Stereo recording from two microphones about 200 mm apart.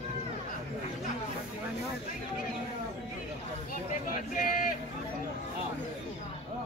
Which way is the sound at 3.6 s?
45° left (ahead or behind).